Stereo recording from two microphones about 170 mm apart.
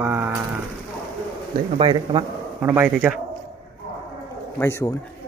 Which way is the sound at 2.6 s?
10° right (ahead or behind).